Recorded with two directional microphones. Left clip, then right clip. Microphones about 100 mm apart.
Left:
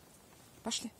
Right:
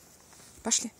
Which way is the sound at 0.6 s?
40° right (ahead or behind).